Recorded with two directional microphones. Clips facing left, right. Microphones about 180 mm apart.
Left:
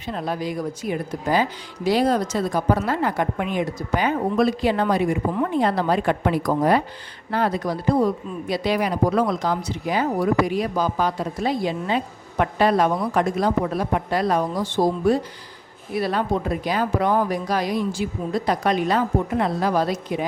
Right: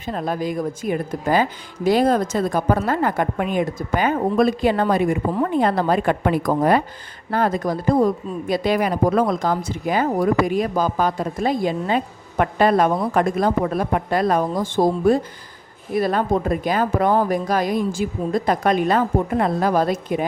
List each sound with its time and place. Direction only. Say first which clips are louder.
0.0 s speech: right 3 dB; 50° right (ahead or behind)